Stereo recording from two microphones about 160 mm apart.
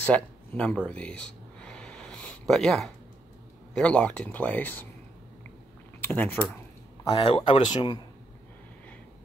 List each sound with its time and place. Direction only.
0.0 s a sound: 10° left (ahead or behind)
3.7 s speech: 5° left (ahead or behind)
6.0 s speech: 10° left (ahead or behind)
7.1 s speech: 30° left (ahead or behind)